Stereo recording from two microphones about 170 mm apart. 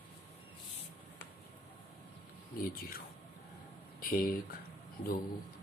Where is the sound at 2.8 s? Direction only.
60° left (ahead or behind).